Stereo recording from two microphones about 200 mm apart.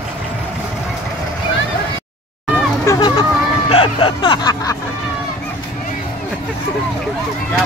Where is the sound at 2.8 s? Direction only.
20° left (ahead or behind).